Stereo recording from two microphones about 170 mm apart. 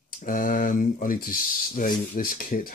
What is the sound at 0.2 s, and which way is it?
Speech, 55° left (ahead or behind).